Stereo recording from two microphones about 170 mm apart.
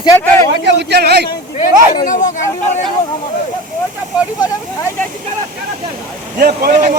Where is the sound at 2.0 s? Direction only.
45° left (ahead or behind).